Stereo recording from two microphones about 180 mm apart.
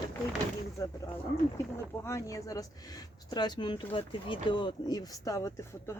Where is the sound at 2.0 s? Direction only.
15° left (ahead or behind).